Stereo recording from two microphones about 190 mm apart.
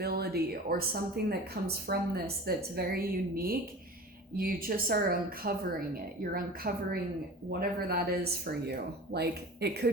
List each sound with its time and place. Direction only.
0.0 s a woman's voice: 55° right (ahead or behind)